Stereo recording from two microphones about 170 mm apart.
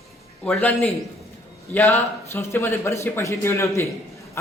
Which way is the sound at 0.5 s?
10° left (ahead or behind).